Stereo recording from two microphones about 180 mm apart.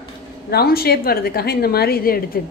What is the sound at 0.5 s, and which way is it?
A woman's voice, 60° left (ahead or behind).